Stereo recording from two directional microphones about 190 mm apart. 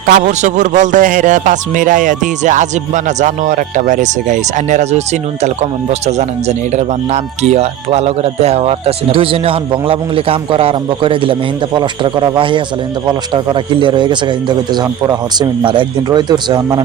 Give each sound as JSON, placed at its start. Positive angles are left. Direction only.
{"t": 0.0, "sound": "a man's voice", "side_deg": -45}